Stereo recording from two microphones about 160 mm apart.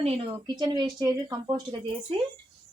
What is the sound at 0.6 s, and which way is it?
A woman's voice, 25° right (ahead or behind).